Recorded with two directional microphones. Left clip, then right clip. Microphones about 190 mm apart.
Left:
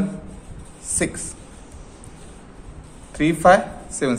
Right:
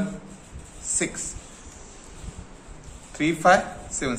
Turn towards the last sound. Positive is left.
turn(degrees=35)  # may be behind; listen again after turning